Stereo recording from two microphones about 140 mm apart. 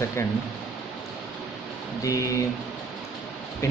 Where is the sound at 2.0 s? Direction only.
25° left (ahead or behind).